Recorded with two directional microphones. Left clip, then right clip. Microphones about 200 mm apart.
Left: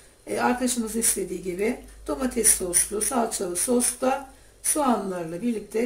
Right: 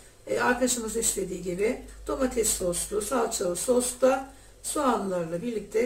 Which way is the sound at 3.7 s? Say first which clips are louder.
Even; 25° left (ahead or behind).